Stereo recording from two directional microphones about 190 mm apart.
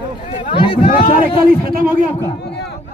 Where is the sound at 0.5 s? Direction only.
30° left (ahead or behind).